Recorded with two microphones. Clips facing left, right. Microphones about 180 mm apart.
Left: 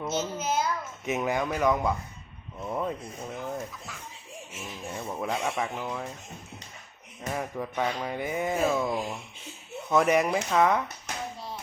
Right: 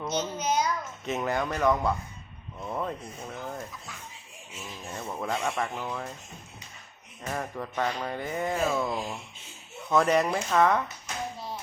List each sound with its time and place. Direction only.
0.0 s a child's voice: 5° left (ahead or behind)
2.6 s music: 5° left (ahead or behind)
4.9 s speech: 5° left (ahead or behind)
7.3 s music: 5° left (ahead or behind)